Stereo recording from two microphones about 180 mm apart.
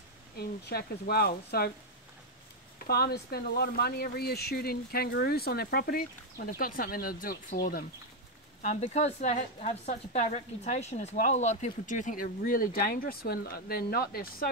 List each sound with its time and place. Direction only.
0.4 s speech: 60° left (ahead or behind)
2.9 s speech: 60° left (ahead or behind)
8.6 s a woman's voice: 40° left (ahead or behind); by 14.5 s 55° left (ahead or behind)